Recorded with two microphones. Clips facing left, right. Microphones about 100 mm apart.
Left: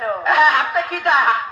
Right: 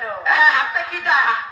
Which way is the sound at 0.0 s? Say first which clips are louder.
Left 2 dB; 55° left (ahead or behind).